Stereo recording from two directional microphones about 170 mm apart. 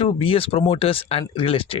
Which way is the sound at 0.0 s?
35° left (ahead or behind).